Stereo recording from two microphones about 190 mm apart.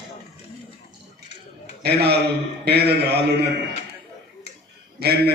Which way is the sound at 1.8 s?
60° right (ahead or behind).